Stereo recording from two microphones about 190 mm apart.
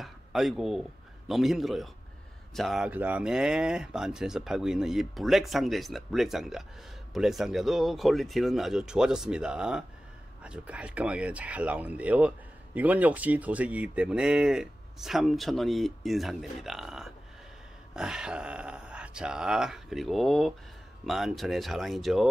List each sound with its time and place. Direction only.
0.0 s a man's voice: centre (ahead or behind)